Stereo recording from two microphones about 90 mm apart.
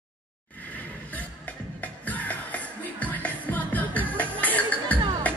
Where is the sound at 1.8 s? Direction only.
15° left (ahead or behind).